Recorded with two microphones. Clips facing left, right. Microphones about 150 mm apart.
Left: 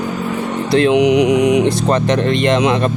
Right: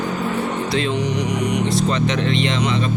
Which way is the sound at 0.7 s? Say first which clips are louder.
Left 10 dB; 65° left (ahead or behind).